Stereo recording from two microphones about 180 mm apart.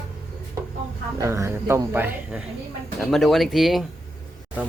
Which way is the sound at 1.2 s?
15° right (ahead or behind).